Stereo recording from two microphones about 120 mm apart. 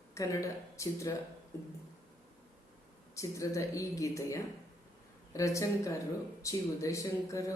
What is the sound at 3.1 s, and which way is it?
Speech, 25° left (ahead or behind).